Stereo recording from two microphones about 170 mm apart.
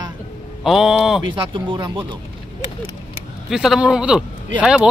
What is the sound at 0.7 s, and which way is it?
Speech, centre (ahead or behind).